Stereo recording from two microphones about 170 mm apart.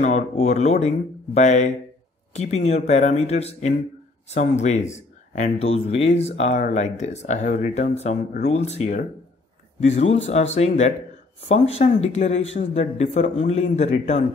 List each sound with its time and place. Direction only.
0.0 s speech: 40° left (ahead or behind)